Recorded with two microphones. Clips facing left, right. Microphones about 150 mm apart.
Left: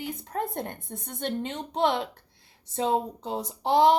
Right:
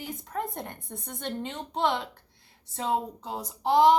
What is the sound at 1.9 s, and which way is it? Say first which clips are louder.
Speech: left 1 dB; 60° left (ahead or behind).